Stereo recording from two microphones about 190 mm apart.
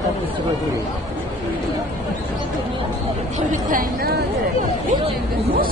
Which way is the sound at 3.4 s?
50° right (ahead or behind).